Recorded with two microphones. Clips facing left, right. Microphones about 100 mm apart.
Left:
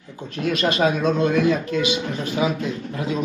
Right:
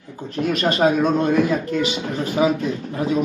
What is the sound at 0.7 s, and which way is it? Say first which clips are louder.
Speech: right 3 dB; 45° right (ahead or behind).